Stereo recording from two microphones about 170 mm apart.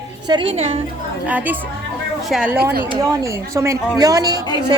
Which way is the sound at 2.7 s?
20° right (ahead or behind).